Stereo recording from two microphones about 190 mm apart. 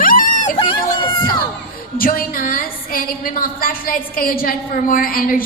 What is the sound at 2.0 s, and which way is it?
A woman's voice, 50° left (ahead or behind).